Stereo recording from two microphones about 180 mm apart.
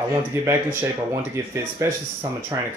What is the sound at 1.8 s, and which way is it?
Speech, 15° right (ahead or behind).